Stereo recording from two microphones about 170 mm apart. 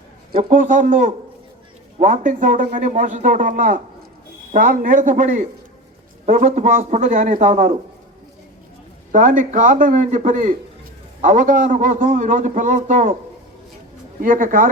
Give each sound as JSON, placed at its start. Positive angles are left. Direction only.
{"t": 0.3, "sound": "a man's voice", "side_deg": -55}
{"t": 9.1, "sound": "a man's voice", "side_deg": -50}
{"t": 14.2, "sound": "a man's voice", "side_deg": -50}